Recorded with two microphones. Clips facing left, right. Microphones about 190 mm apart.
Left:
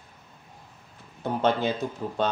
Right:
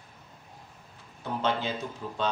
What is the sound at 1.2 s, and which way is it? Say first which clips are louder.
Speech: left 5 dB; 50° left (ahead or behind).